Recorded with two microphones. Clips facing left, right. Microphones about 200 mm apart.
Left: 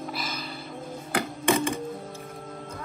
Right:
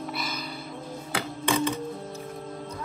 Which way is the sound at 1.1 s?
50° left (ahead or behind).